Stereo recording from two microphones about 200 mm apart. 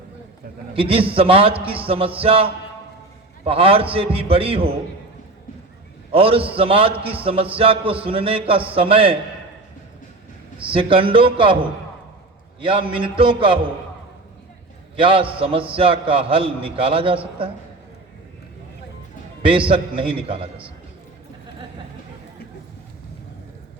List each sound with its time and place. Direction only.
0.7 s a man's voice: 25° right (ahead or behind)
6.1 s a man's voice: 25° right (ahead or behind)
10.7 s a man's voice: 25° right (ahead or behind)
12.5 s a man's voice: 25° right (ahead or behind)
14.9 s a man's voice: 25° right (ahead or behind)
19.4 s a man's voice: 25° right (ahead or behind)